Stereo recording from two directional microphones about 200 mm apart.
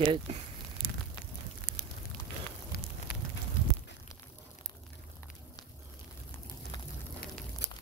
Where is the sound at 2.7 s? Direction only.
50° left (ahead or behind).